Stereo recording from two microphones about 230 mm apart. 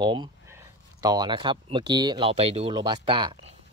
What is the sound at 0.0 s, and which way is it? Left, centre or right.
Speech, centre.